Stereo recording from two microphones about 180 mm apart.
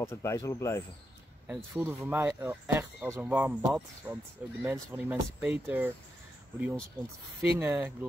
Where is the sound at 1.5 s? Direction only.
10° right (ahead or behind).